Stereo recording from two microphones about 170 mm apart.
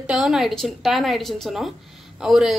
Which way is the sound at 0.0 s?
5° right (ahead or behind).